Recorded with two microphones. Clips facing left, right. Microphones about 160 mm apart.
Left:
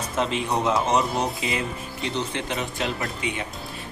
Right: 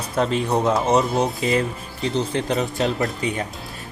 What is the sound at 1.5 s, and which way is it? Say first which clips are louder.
Speech: right 6 dB; 35° right (ahead or behind).